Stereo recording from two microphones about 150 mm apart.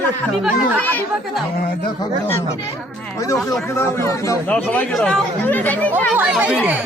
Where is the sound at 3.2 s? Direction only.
20° left (ahead or behind).